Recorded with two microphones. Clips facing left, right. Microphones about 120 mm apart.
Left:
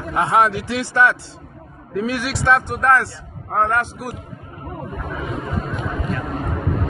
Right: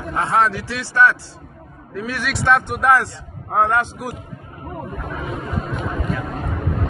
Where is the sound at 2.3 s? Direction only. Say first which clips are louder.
Right 1 dB; centre (ahead or behind).